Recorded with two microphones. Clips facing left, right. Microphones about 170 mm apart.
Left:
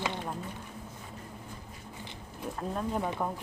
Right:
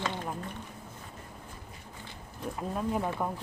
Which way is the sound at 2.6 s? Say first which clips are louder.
Right 1 dB; 5° right (ahead or behind).